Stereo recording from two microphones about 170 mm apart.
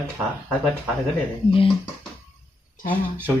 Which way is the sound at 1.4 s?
30° left (ahead or behind).